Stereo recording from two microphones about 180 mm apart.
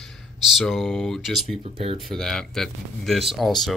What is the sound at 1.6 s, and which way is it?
Speech, 30° right (ahead or behind).